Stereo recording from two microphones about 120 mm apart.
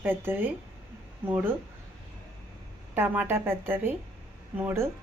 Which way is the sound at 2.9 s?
20° right (ahead or behind).